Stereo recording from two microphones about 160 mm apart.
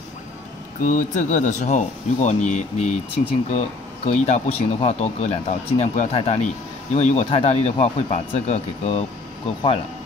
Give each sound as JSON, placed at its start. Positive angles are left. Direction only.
{"t": 0.8, "sound": "speech", "side_deg": 55}